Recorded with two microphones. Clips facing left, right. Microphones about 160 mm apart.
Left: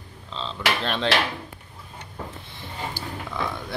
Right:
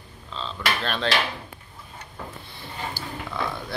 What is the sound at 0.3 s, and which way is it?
Dishes, 25° left (ahead or behind).